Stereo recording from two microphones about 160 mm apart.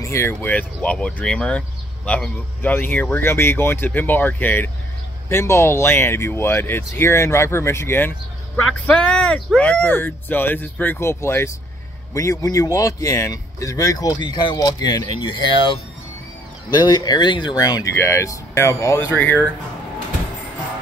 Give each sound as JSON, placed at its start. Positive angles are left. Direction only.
{"t": 0.0, "sound": "speech", "side_deg": 15}
{"t": 16.7, "sound": "speech", "side_deg": 25}